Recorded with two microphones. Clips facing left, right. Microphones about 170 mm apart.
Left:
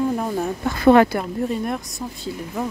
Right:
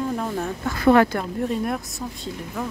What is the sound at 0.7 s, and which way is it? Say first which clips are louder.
Speech: left 3 dB; 25° left (ahead or behind).